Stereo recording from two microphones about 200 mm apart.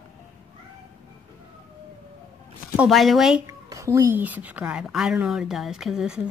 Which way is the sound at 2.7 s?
5° right (ahead or behind).